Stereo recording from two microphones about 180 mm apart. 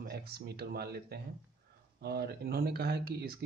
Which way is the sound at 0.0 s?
60° right (ahead or behind).